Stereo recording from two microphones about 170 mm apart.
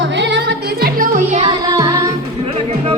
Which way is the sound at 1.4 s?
25° right (ahead or behind).